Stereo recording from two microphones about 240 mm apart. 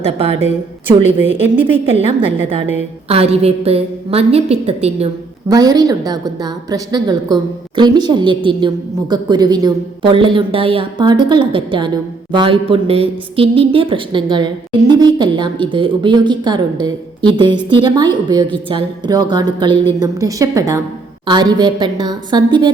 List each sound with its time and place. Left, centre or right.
1.5 s a woman's voice: right
3.1 s a woman's voice: right
5.5 s a woman's voice: centre